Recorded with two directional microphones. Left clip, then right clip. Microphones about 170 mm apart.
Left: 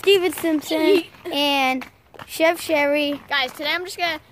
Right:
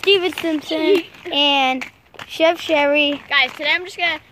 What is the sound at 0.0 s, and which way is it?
Speech, 10° left (ahead or behind).